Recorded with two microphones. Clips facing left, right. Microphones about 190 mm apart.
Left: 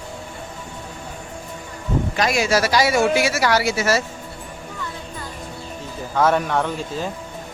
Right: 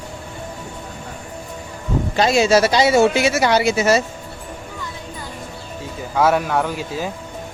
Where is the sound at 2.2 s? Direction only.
25° right (ahead or behind).